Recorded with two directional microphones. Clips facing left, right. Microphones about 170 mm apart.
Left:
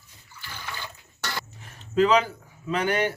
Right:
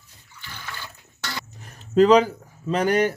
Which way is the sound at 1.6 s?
40° right (ahead or behind).